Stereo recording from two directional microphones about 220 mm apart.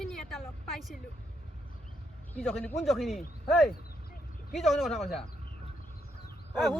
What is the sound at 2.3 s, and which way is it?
Speech, 5° left (ahead or behind).